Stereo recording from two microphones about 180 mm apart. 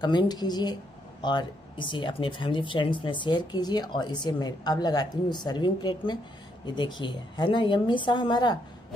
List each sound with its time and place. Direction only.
0.0 s speech: 25° left (ahead or behind)